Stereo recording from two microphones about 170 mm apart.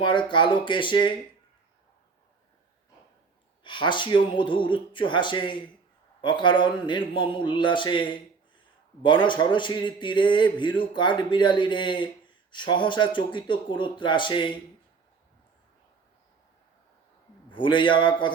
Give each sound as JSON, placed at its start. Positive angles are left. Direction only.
{"t": 0.0, "sound": "a man's voice", "side_deg": 30}
{"t": 3.6, "sound": "a man's voice", "side_deg": 25}
{"t": 17.5, "sound": "a man's voice", "side_deg": 30}